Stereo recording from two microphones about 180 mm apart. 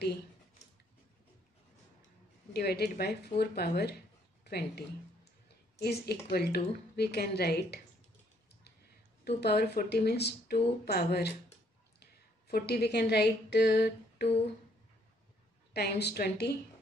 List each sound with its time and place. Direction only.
2.5 s speech: 60° left (ahead or behind)
9.2 s a woman's voice: 60° left (ahead or behind)
15.7 s speech: 65° left (ahead or behind)